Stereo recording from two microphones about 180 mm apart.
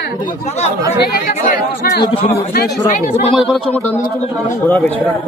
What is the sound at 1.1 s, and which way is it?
Speech, 55° left (ahead or behind).